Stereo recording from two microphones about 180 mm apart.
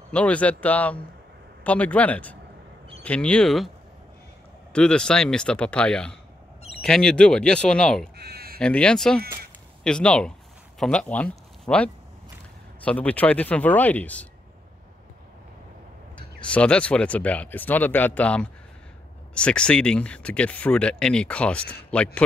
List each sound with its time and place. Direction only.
0.1 s speech: 5° left (ahead or behind)
4.7 s speech: 5° left (ahead or behind)
8.2 s bleat: 60° right (ahead or behind)
8.5 s speech: 5° left (ahead or behind)
16.3 s speech: 5° left (ahead or behind)